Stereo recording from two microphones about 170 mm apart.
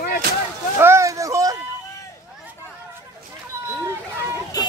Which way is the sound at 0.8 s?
15° right (ahead or behind).